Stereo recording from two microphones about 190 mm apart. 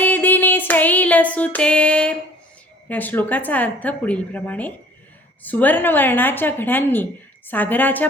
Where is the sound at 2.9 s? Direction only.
10° left (ahead or behind).